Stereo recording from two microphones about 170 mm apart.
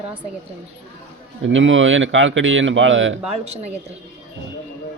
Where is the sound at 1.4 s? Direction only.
90° right.